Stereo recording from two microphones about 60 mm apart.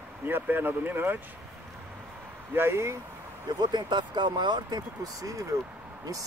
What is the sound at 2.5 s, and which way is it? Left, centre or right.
Speech, right.